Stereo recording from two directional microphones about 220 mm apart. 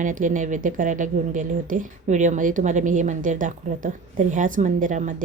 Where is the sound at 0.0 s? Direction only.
35° right (ahead or behind).